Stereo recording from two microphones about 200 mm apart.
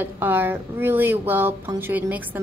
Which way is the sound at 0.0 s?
10° right (ahead or behind).